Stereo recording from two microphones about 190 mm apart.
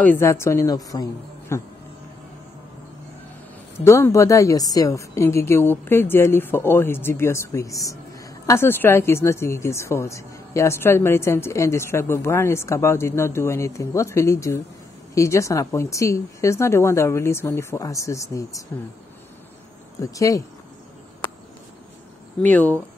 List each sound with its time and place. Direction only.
0.0 s a woman's voice: 10° left (ahead or behind)
3.8 s a woman's voice: 15° left (ahead or behind)
20.0 s a woman's voice: 15° left (ahead or behind)
22.4 s a woman's voice: 10° left (ahead or behind)